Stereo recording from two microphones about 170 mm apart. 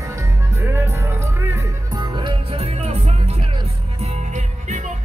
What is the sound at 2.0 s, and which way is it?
Music, 25° right (ahead or behind).